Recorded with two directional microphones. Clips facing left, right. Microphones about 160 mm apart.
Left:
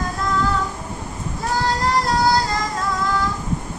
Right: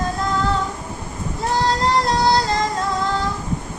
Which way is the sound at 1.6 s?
25° right (ahead or behind).